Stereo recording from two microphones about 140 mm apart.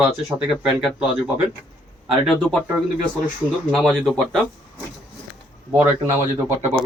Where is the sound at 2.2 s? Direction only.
Centre (ahead or behind).